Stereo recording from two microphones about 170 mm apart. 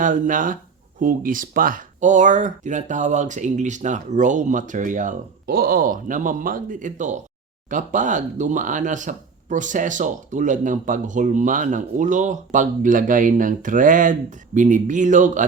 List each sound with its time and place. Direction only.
0.0 s speech: 50° right (ahead or behind)